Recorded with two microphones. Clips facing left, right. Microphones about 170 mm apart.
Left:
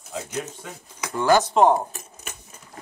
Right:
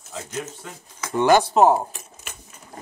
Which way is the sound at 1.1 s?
20° right (ahead or behind).